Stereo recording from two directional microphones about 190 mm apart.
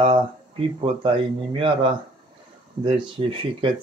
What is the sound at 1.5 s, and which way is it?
Speech, 25° right (ahead or behind).